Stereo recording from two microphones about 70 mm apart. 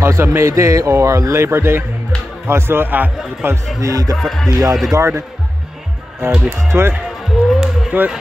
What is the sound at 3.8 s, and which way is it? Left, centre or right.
Speech, right.